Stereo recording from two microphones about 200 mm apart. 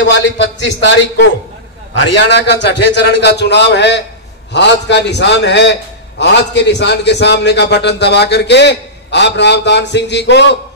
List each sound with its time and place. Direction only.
0.0 s a man's voice: 60° left (ahead or behind)